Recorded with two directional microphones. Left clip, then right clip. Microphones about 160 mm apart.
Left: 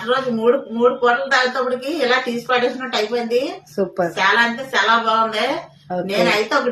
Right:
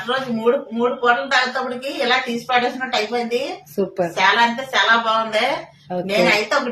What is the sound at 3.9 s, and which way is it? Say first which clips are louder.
A woman's voice: even; 15° right (ahead or behind).